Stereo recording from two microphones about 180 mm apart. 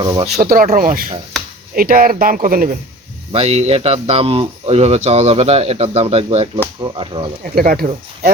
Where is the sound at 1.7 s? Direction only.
55° right (ahead or behind).